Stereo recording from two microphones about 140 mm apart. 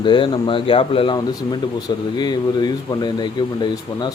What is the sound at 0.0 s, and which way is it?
Speech, 35° left (ahead or behind).